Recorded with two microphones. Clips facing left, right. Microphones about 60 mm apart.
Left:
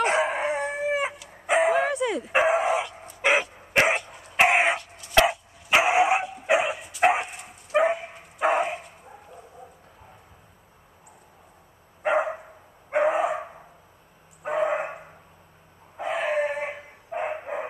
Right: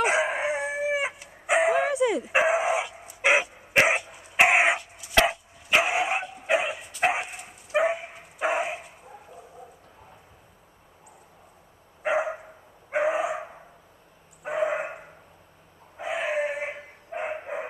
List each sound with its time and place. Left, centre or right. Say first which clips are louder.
0.0 s dog: left 1 dB; centre
5.7 s dog: left 4 dB; centre
6.0 s dog: left 4 dB; centre
12.0 s dog: left 2 dB; centre
16.0 s dog: left 2 dB; centre